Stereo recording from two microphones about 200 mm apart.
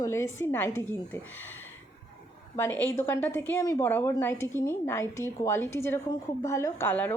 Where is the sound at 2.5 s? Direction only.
10° left (ahead or behind).